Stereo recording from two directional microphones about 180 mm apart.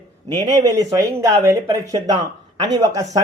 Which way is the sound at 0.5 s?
20° right (ahead or behind).